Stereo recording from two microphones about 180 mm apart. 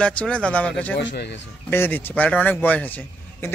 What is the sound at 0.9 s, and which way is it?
Speech, 85° left.